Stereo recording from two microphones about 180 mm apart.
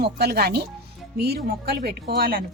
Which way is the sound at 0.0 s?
65° right (ahead or behind).